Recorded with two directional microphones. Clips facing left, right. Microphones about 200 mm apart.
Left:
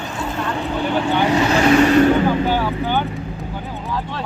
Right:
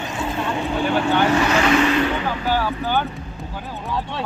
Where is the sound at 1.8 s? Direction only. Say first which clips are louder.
Left 6 dB; 45° left (ahead or behind).